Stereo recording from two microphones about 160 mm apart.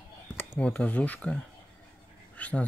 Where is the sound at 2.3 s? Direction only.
10° left (ahead or behind).